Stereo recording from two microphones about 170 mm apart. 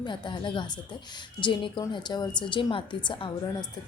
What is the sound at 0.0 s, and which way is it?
Speech, 30° left (ahead or behind).